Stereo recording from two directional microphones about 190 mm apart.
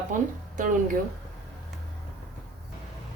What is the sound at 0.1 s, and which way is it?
Speech, 45° right (ahead or behind).